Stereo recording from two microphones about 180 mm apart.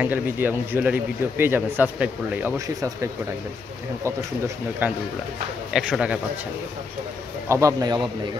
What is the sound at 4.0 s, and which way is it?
Speech, 15° right (ahead or behind).